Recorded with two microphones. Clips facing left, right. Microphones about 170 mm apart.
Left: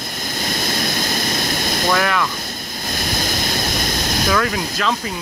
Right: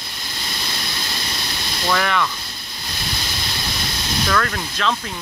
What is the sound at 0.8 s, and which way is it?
Vehicle, 45° left (ahead or behind).